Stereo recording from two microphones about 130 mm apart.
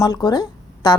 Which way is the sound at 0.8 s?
35° left (ahead or behind).